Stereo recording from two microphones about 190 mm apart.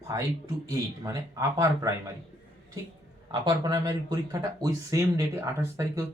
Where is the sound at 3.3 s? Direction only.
20° right (ahead or behind).